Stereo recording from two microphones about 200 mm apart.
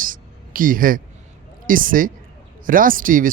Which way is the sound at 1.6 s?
45° right (ahead or behind).